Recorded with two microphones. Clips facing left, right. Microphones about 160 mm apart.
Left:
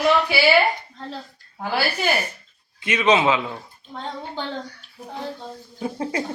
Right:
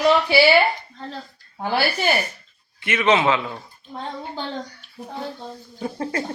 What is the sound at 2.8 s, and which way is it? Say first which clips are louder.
Speech: even; 15° left (ahead or behind).